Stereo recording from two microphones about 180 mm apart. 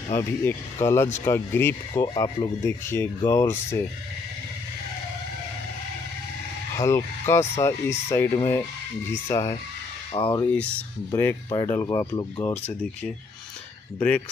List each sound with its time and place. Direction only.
0.1 s speech: 15° left (ahead or behind)
6.8 s speech: 15° left (ahead or behind)
9.3 s speech: 20° left (ahead or behind)
13.9 s speech: 10° left (ahead or behind)